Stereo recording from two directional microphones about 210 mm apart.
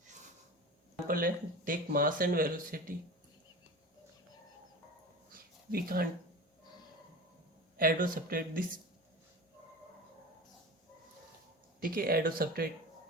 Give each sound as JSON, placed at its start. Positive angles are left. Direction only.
{"t": 1.0, "sound": "speech", "side_deg": -40}
{"t": 5.7, "sound": "speech", "side_deg": -45}
{"t": 7.8, "sound": "speech", "side_deg": -40}
{"t": 11.8, "sound": "speech", "side_deg": -45}